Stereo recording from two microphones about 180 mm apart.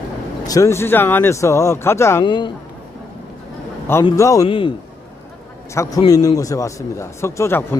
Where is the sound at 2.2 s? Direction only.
25° left (ahead or behind).